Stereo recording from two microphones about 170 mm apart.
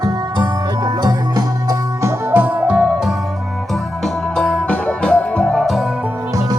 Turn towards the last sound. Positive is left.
turn(degrees=0)  # may be behind; listen again after turning